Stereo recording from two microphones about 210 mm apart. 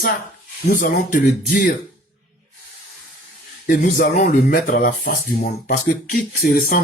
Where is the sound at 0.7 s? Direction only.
40° left (ahead or behind).